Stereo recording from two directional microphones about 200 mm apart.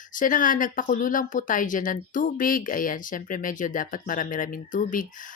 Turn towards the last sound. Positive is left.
turn(degrees=40)  # may be behind; listen again after turning